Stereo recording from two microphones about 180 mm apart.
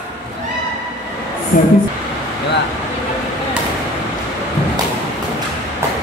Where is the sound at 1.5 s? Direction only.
45° left (ahead or behind).